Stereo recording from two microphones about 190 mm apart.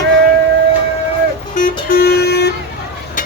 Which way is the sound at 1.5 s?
45° left (ahead or behind).